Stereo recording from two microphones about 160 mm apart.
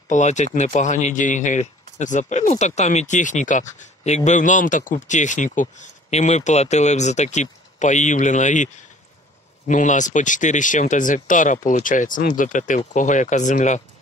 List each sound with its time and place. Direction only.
0.1 s speech: 50° left (ahead or behind)
9.7 s speech: 50° left (ahead or behind)